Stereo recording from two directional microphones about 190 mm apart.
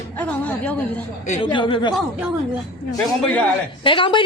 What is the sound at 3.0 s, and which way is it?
Speech, 5° left (ahead or behind).